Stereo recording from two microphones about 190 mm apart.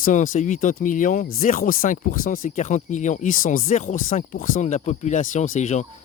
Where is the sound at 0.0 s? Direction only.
40° left (ahead or behind).